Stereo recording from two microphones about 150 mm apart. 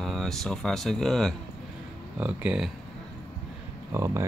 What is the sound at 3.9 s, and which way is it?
Speech, 20° right (ahead or behind).